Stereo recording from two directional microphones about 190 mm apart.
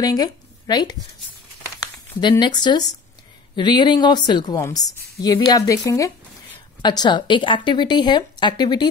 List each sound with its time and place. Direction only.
0.0 s speech: 20° left (ahead or behind)
2.1 s speech: 25° left (ahead or behind)